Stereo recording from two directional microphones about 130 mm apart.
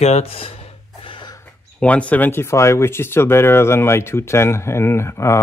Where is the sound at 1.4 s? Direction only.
10° left (ahead or behind).